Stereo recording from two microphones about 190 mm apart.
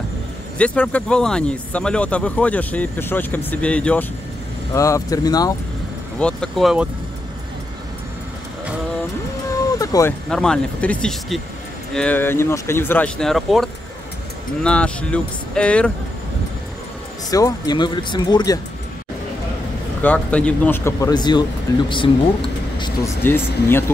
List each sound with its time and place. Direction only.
0.6 s speech: 5° left (ahead or behind)
6.1 s speech: 5° left (ahead or behind)
9.7 s a sound: 20° left (ahead or behind)
10.3 s speech: 5° left (ahead or behind)
17.3 s speech: 20° left (ahead or behind)
20.0 s speech: 10° left (ahead or behind); by 22.8 s 25° left (ahead or behind)
23.0 s speech: 10° left (ahead or behind)